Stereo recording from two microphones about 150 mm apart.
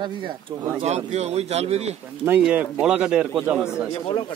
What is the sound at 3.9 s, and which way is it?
Speech, 40° left (ahead or behind).